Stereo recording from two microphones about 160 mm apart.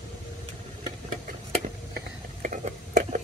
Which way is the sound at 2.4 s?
55° right (ahead or behind).